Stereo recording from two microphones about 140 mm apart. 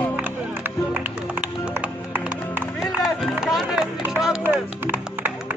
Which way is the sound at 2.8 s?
Centre (ahead or behind).